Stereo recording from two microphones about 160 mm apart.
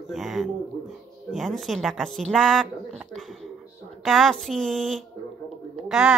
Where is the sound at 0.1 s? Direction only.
Centre (ahead or behind).